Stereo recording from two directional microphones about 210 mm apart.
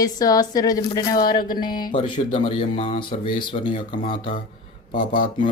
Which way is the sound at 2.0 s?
25° left (ahead or behind).